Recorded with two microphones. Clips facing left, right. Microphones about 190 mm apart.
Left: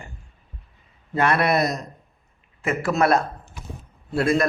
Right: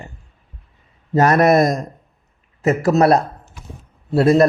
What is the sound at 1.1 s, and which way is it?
A man's voice, 40° right (ahead or behind).